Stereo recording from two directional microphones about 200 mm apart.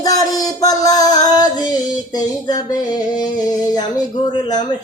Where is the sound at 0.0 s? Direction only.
20° left (ahead or behind).